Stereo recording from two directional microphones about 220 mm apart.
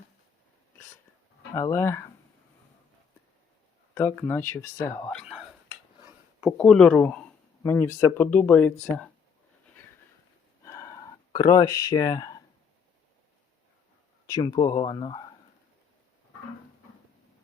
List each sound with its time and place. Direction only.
1.5 s speech: 15° left (ahead or behind)
3.9 s speech: 10° left (ahead or behind)
6.6 s speech: 5° left (ahead or behind)
10.6 s a sound: 15° left (ahead or behind)
14.3 s speech: 15° left (ahead or behind)